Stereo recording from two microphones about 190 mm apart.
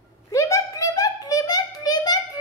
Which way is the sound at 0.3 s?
15° left (ahead or behind).